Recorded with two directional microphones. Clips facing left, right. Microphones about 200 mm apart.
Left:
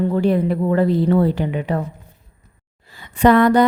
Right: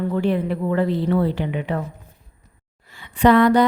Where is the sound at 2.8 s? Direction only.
40° left (ahead or behind).